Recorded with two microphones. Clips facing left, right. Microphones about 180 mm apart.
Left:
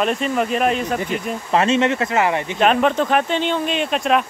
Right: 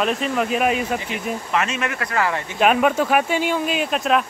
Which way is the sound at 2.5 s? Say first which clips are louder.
Even; 5° right (ahead or behind).